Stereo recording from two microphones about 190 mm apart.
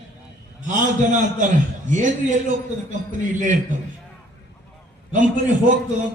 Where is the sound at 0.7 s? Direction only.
40° right (ahead or behind).